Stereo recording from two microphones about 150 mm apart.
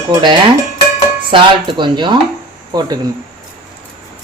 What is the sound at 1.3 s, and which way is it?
Speech, 35° right (ahead or behind).